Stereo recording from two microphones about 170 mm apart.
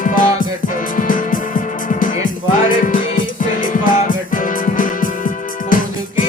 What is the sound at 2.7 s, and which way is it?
Music, 55° left (ahead or behind).